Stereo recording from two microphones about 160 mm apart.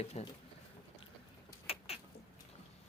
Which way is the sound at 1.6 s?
35° left (ahead or behind).